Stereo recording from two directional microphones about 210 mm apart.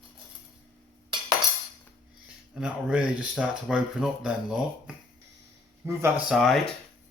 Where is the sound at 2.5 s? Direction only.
5° right (ahead or behind).